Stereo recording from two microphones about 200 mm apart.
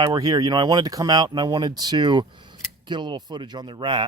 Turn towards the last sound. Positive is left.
turn(degrees=-25)  # may be behind; listen again after turning